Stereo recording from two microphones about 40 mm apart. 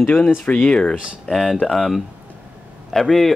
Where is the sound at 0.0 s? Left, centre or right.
Left.